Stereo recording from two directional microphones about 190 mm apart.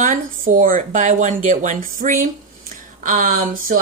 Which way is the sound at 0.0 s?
45° right (ahead or behind).